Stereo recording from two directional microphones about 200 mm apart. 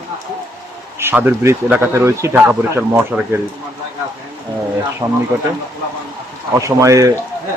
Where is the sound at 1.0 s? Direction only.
10° right (ahead or behind).